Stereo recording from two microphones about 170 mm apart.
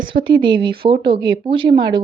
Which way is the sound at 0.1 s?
30° right (ahead or behind).